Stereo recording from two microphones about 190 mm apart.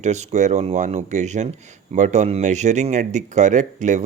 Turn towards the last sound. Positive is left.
turn(degrees=-40)  # may be behind; listen again after turning